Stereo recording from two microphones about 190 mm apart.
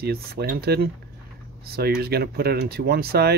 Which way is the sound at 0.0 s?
55° right (ahead or behind).